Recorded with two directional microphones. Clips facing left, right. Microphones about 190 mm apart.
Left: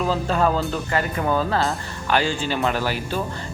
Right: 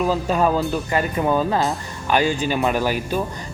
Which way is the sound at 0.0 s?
10° right (ahead or behind).